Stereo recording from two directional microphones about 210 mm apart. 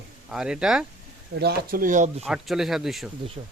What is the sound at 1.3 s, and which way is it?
Speech, 50° right (ahead or behind).